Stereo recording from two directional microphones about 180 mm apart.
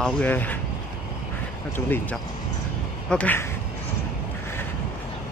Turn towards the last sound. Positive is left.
turn(degrees=10)  # may be behind; listen again after turning